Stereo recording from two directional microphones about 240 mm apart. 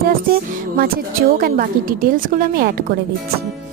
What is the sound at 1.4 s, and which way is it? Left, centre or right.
Speech, right.